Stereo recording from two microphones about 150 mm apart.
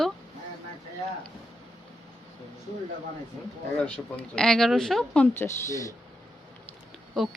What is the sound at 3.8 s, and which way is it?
Speech, 5° left (ahead or behind).